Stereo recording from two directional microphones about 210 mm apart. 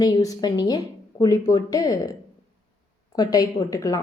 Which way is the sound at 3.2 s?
15° left (ahead or behind).